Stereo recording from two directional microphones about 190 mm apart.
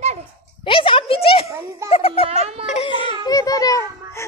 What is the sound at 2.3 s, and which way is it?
Speech, 35° right (ahead or behind).